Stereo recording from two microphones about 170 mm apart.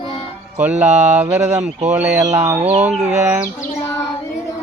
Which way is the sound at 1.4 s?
40° right (ahead or behind).